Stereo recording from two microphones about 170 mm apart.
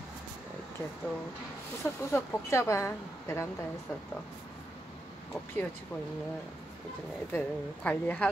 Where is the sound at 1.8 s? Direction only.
15° left (ahead or behind).